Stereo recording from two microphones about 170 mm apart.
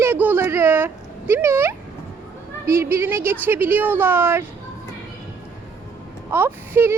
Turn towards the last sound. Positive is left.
turn(degrees=-15)  # may be behind; listen again after turning